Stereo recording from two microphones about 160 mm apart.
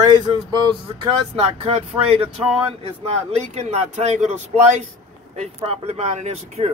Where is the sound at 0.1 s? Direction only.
30° right (ahead or behind).